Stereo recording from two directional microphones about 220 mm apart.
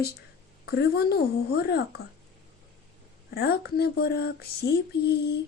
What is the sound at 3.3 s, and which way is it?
A woman's voice, 45° left (ahead or behind).